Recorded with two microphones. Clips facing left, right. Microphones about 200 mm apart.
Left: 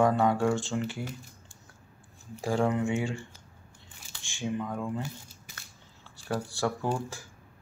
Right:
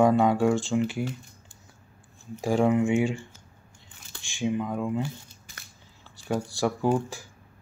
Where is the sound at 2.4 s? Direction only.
15° right (ahead or behind).